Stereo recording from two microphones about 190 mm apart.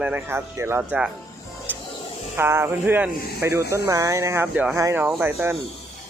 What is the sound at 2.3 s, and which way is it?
Speech, 15° right (ahead or behind).